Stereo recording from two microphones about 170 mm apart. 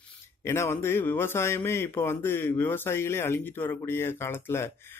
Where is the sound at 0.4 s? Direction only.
15° left (ahead or behind).